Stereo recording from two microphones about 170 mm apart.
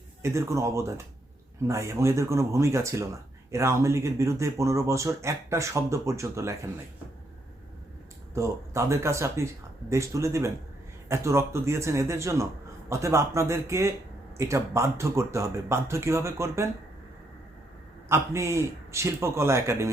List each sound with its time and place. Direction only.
0.2 s speech: 15° right (ahead or behind)
8.4 s speech: 15° right (ahead or behind)
18.1 s speech: 15° right (ahead or behind)